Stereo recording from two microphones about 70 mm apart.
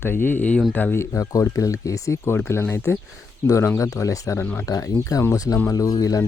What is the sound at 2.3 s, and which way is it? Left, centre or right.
Speech, left.